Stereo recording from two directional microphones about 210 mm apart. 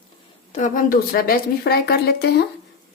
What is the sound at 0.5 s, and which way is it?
A woman's voice, 40° left (ahead or behind).